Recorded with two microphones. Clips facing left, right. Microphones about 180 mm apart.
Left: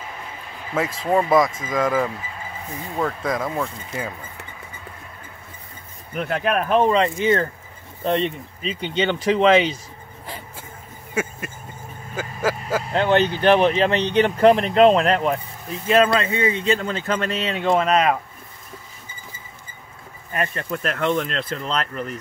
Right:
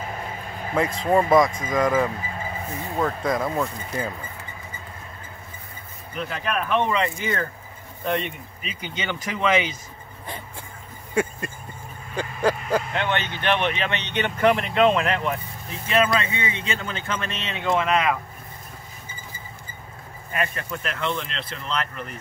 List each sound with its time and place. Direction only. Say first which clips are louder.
0.7 s speech: even; centre (ahead or behind)
3.0 s speech: even; centre (ahead or behind)
6.1 s speech: left 5 dB; 60° left (ahead or behind)
6.7 s speech: left 5 dB; 35° left (ahead or behind)
12.2 s a sound: right 1 dB; 5° left (ahead or behind)
12.8 s speech: left 8 dB; 35° left (ahead or behind)
20.3 s speech: left 3 dB; 40° left (ahead or behind)